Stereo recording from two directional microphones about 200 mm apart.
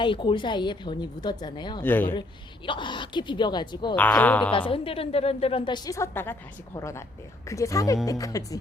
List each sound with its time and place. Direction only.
0.0 s a woman's voice: 25° left (ahead or behind)
1.8 s a woman's voice: 10° left (ahead or behind)
2.6 s a woman's voice: 25° left (ahead or behind)
3.9 s a woman's voice: 5° left (ahead or behind)
4.5 s a woman's voice: 25° left (ahead or behind)